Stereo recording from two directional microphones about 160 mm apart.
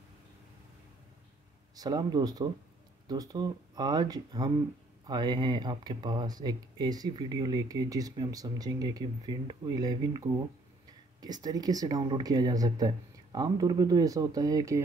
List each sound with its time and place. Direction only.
1.8 s speech: 25° right (ahead or behind)